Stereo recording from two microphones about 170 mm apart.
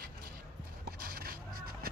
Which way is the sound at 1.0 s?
60° right (ahead or behind).